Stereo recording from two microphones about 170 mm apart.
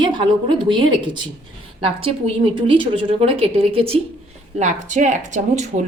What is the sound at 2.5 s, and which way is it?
A woman's voice, 30° right (ahead or behind).